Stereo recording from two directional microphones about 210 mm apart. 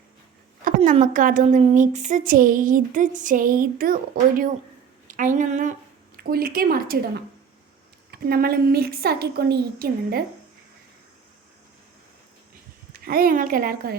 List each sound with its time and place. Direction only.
0.8 s a woman's voice: 35° right (ahead or behind)
8.1 s a woman's voice: 45° right (ahead or behind)
12.9 s speech: 45° right (ahead or behind)